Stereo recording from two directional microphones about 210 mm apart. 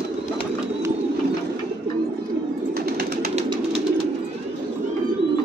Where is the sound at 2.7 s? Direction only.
45° right (ahead or behind).